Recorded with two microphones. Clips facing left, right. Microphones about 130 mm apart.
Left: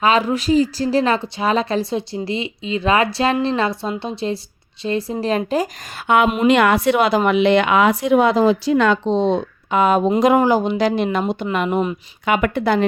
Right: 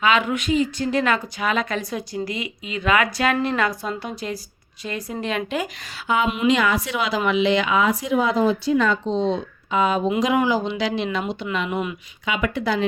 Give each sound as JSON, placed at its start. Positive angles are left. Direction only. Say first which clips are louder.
{"t": 0.0, "sound": "a woman's voice", "louder": "left 4 dB", "side_deg": 35}
{"t": 6.1, "sound": "a woman's voice", "louder": "left 5 dB", "side_deg": 65}
{"t": 11.7, "sound": "a woman's voice", "louder": "left 6 dB", "side_deg": 35}
{"t": 12.2, "sound": "a woman's voice", "louder": "left 6 dB", "side_deg": 55}